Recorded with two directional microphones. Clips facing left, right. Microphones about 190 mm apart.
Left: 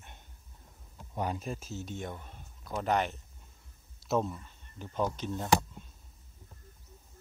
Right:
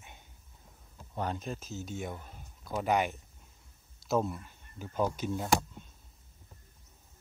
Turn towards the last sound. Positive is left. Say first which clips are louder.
# left 1 dB
turn(degrees=-5)  # may be behind; listen again after turning